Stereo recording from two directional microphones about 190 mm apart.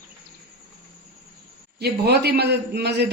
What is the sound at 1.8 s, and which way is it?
A man's voice, 55° right (ahead or behind).